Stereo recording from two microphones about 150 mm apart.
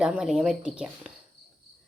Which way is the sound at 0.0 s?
5° right (ahead or behind).